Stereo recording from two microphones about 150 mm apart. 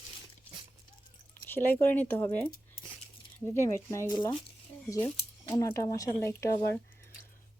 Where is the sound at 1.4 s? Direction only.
15° left (ahead or behind).